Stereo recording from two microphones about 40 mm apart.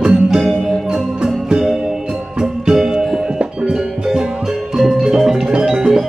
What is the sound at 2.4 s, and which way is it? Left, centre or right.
Music, centre.